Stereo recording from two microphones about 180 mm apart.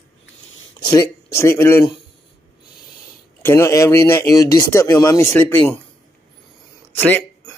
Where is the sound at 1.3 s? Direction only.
15° left (ahead or behind).